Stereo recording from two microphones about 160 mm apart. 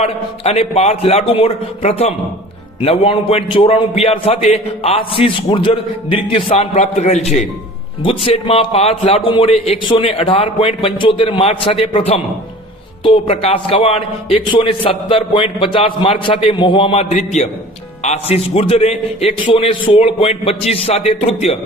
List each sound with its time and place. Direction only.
0.0 s a man's voice: 40° left (ahead or behind)
6.7 s a man's voice: 45° left (ahead or behind)